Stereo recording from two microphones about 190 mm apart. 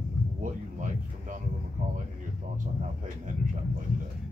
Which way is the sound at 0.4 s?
45° right (ahead or behind).